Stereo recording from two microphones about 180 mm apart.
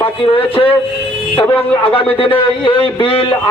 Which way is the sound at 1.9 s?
30° left (ahead or behind).